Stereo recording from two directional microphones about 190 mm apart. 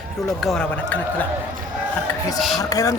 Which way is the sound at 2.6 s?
20° left (ahead or behind).